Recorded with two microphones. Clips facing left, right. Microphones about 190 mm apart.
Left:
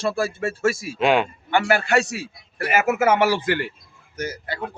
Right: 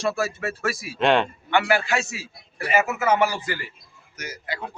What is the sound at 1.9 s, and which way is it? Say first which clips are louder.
Speech: left 6 dB; 70° left (ahead or behind).